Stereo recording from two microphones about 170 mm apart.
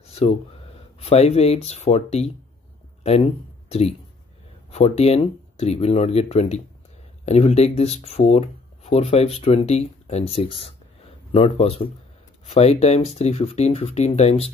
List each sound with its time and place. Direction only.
0.0 s a sound: 40° left (ahead or behind)
0.7 s speech: 35° left (ahead or behind)
3.6 s speech: 40° left (ahead or behind)